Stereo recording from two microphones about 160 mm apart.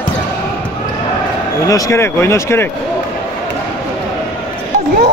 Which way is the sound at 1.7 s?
20° left (ahead or behind).